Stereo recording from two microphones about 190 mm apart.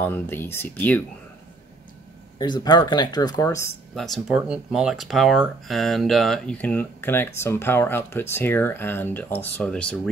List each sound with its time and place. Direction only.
0.0 s speech: 10° left (ahead or behind)
2.3 s speech: 20° left (ahead or behind)
3.9 s speech: centre (ahead or behind)